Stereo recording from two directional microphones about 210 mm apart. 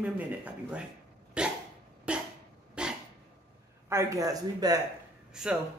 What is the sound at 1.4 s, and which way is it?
Dog, 5° right (ahead or behind).